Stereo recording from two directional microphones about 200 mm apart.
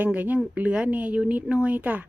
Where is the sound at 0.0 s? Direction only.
10° right (ahead or behind).